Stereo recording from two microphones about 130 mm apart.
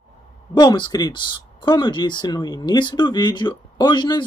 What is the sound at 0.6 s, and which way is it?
Speech, 35° left (ahead or behind).